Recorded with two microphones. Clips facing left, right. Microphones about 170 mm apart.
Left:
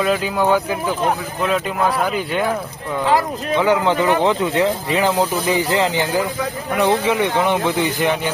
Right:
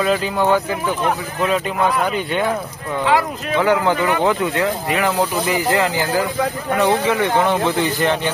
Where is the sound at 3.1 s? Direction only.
40° left (ahead or behind).